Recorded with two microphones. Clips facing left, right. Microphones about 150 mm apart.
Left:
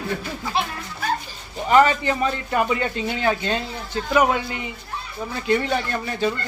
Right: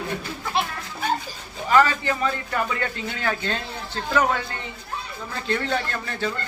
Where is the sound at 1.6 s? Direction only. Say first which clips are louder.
Left 3 dB; 20° left (ahead or behind).